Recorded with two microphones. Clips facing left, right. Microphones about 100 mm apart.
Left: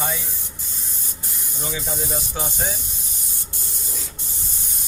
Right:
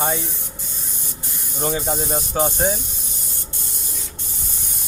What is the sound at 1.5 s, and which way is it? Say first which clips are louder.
Speech: right 7 dB; 50° right (ahead or behind).